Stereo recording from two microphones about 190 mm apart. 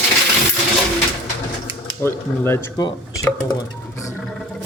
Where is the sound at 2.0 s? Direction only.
10° left (ahead or behind).